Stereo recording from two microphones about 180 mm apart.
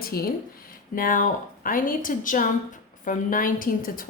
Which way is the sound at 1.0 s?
50° left (ahead or behind).